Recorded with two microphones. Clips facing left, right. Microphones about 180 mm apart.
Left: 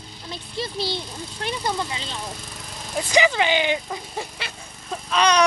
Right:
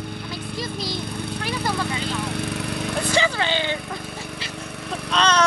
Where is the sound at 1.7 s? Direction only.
65° right (ahead or behind).